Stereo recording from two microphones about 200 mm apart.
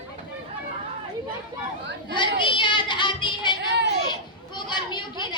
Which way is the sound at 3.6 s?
60° right (ahead or behind).